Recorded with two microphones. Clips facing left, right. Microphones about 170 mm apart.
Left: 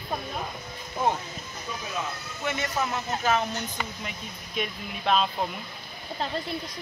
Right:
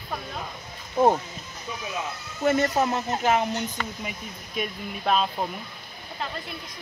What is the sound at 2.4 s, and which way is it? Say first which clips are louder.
Speech: right 8 dB; 45° right (ahead or behind).